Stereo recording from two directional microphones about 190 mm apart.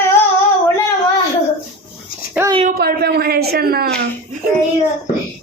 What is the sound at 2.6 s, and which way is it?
A woman's voice, 55° right (ahead or behind).